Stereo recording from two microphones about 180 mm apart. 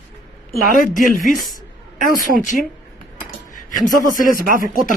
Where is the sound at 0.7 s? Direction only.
50° left (ahead or behind).